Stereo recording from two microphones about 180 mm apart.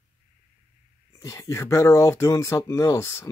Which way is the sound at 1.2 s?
15° left (ahead or behind).